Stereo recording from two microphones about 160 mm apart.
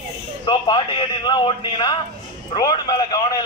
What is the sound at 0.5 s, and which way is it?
A man's voice, 30° left (ahead or behind).